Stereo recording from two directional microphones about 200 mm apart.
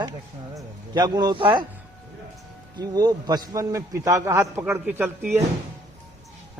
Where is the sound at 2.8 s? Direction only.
20° right (ahead or behind).